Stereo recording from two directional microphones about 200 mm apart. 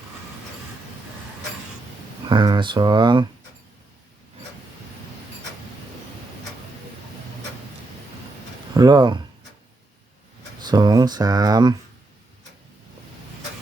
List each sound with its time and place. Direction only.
2.2 s speech: 20° right (ahead or behind)
8.7 s speech: 20° right (ahead or behind)
10.6 s speech: 20° right (ahead or behind)